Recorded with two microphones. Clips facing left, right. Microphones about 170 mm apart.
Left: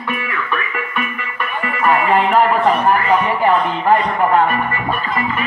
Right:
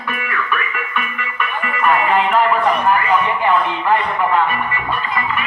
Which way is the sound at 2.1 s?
40° left (ahead or behind).